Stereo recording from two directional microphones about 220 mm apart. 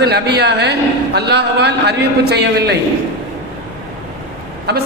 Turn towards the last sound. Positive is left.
turn(degrees=-50)  # may be behind; listen again after turning